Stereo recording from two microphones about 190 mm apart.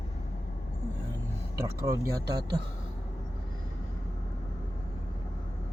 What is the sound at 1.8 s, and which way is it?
Speech, 20° right (ahead or behind).